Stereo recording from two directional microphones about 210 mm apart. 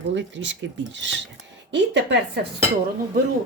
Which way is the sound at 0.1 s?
60° right (ahead or behind).